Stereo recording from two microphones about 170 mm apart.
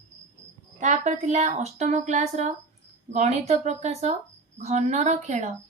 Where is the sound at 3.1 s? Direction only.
40° right (ahead or behind).